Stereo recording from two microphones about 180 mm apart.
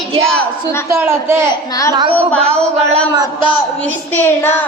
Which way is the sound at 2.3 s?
5° left (ahead or behind).